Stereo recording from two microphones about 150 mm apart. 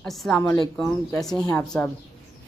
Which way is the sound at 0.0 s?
5° left (ahead or behind).